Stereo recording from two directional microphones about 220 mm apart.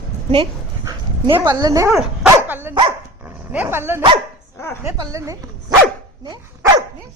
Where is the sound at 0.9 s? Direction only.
20° right (ahead or behind).